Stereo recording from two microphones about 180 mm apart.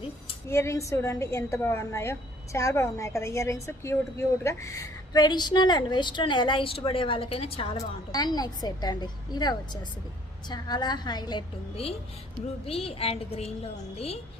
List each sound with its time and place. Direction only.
0.5 s a woman's voice: 15° left (ahead or behind); by 14.2 s 35° left (ahead or behind)